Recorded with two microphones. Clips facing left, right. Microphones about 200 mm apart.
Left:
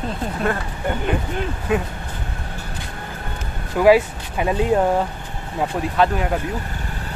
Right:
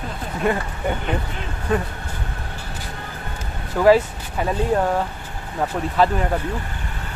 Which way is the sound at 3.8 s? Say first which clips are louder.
Left 1 dB; 10° left (ahead or behind).